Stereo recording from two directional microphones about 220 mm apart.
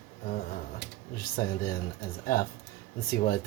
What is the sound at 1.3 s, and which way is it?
Speech, 45° left (ahead or behind).